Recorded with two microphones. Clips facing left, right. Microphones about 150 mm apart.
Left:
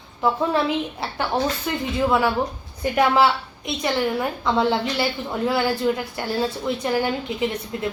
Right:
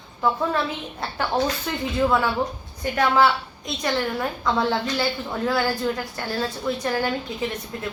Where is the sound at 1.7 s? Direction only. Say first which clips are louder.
Left 3 dB; 5° left (ahead or behind).